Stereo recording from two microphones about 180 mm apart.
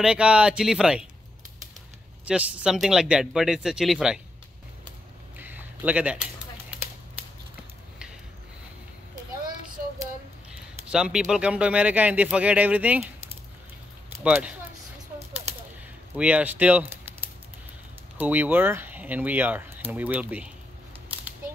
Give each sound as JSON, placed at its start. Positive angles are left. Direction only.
{"t": 0.0, "sound": "speech", "side_deg": -5}
{"t": 2.2, "sound": "speech", "side_deg": -5}
{"t": 5.4, "sound": "a sound", "side_deg": -10}
{"t": 10.9, "sound": "speech", "side_deg": -5}
{"t": 14.2, "sound": "speech", "side_deg": -10}
{"t": 16.2, "sound": "speech", "side_deg": -5}
{"t": 18.1, "sound": "speech", "side_deg": -10}